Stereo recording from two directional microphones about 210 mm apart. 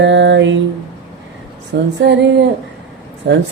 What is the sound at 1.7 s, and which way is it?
Mantra, 60° right (ahead or behind).